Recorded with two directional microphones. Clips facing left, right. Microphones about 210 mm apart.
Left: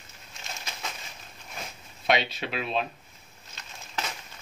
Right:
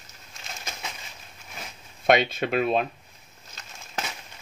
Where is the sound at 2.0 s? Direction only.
50° right (ahead or behind).